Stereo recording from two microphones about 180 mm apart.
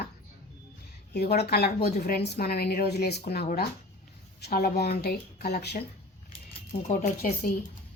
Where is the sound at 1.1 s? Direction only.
65° left (ahead or behind).